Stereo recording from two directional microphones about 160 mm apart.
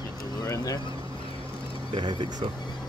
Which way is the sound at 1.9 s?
25° right (ahead or behind).